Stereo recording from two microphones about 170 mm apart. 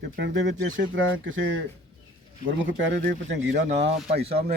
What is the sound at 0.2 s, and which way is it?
A man's voice, 90° right.